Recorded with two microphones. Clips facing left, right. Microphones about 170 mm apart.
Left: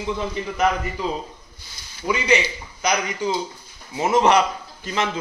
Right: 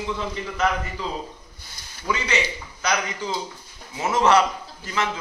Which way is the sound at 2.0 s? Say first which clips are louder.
Left 5 dB; 15° left (ahead or behind).